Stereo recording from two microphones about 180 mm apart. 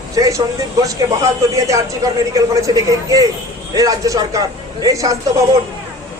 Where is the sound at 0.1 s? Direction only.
20° right (ahead or behind).